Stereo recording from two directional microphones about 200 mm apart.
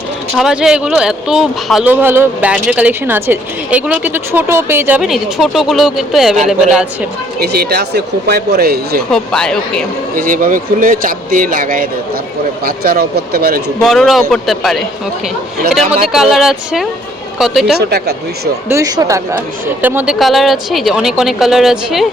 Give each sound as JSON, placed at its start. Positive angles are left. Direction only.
{"t": 0.3, "sound": "speech", "side_deg": 0}
{"t": 7.3, "sound": "speech", "side_deg": -50}
{"t": 9.1, "sound": "speech", "side_deg": 5}
{"t": 10.2, "sound": "speech", "side_deg": -45}
{"t": 13.8, "sound": "speech", "side_deg": 0}
{"t": 16.1, "sound": "speech", "side_deg": 0}
{"t": 17.7, "sound": "speech", "side_deg": -55}
{"t": 18.7, "sound": "speech", "side_deg": -15}